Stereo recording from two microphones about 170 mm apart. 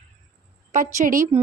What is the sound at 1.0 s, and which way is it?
Speech, 50° right (ahead or behind).